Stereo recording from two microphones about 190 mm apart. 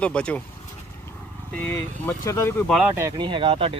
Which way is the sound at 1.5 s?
10° left (ahead or behind).